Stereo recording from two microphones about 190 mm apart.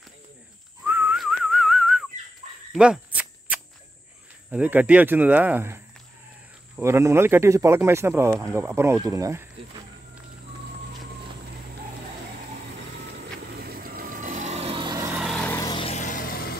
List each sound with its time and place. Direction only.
0.8 s whistling: 10° right (ahead or behind)
2.7 s cricket: 5° right (ahead or behind)
4.5 s speech: 10° right (ahead or behind)
6.8 s speech: 15° right (ahead or behind)
13.6 s vehicle: 55° right (ahead or behind); by 15.1 s 20° right (ahead or behind)
15.1 s vehicle: centre (ahead or behind)
15.5 s vehicle: 20° left (ahead or behind)
15.9 s vehicle: 40° left (ahead or behind)